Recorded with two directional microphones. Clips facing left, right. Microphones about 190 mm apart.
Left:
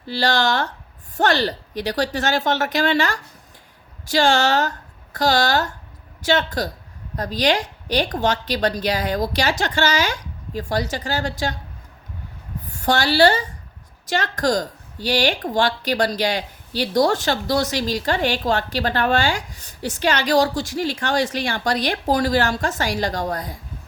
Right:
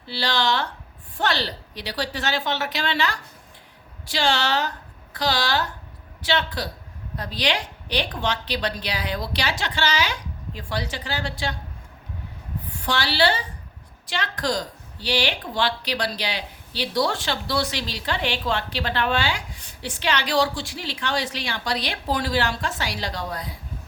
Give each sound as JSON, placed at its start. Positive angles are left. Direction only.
{"t": 0.0, "sound": "a woman's voice", "side_deg": 45}
{"t": 12.7, "sound": "a woman's voice", "side_deg": 45}